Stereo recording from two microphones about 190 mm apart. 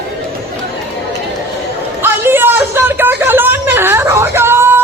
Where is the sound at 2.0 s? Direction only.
10° right (ahead or behind).